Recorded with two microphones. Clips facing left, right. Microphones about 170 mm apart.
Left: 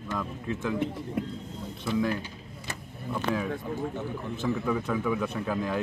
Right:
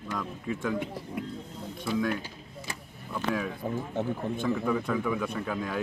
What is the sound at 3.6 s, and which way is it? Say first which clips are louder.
Speech: right 2 dB; 50° right (ahead or behind).